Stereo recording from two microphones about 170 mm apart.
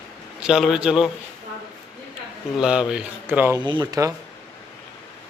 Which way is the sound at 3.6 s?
25° right (ahead or behind).